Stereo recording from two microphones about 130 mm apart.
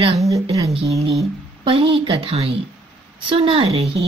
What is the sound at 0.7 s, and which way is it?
A woman's voice, 45° right (ahead or behind).